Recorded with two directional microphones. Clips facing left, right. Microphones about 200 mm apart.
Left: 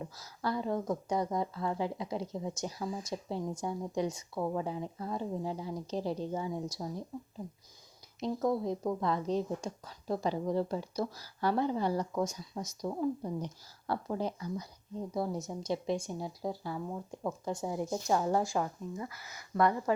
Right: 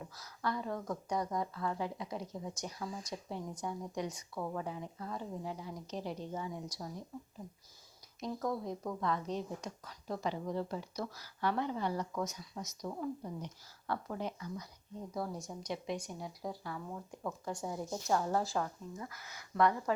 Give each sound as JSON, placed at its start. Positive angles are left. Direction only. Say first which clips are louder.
{"t": 0.0, "sound": "a woman's voice", "louder": "left 3 dB", "side_deg": 25}
{"t": 8.2, "sound": "a woman's voice", "louder": "left 6 dB", "side_deg": 30}